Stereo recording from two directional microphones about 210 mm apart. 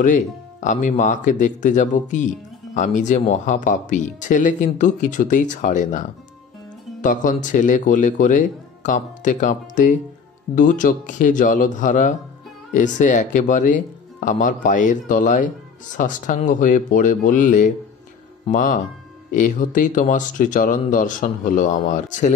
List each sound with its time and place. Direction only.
0.0 s speech: 35° left (ahead or behind)